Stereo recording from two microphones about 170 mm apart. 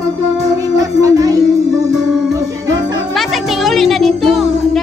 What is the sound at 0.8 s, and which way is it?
Music, 20° right (ahead or behind).